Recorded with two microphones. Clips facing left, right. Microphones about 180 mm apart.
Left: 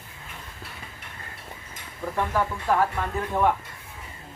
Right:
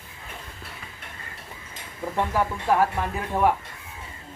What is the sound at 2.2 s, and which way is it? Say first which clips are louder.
Speech: right 1 dB; 15° right (ahead or behind).